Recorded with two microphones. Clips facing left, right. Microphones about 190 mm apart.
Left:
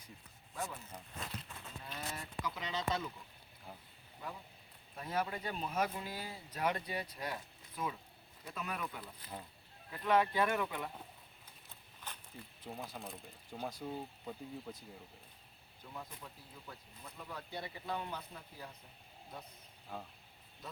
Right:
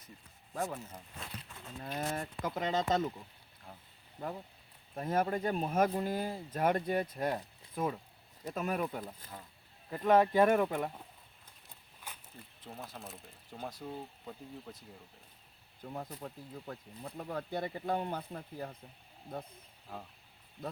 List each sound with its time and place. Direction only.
0.5 s speech: 40° right (ahead or behind)
1.8 s speech: 45° right (ahead or behind)
4.2 s speech: 40° right (ahead or behind)
12.1 s a sound: 10° right (ahead or behind)
12.6 s speech: centre (ahead or behind)
15.8 s speech: 45° right (ahead or behind)
19.9 s speech: centre (ahead or behind)